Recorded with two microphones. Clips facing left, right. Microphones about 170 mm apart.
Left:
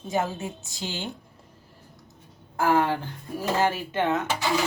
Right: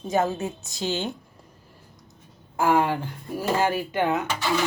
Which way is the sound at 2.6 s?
15° right (ahead or behind).